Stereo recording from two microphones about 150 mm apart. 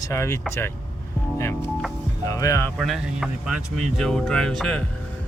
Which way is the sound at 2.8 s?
Centre (ahead or behind).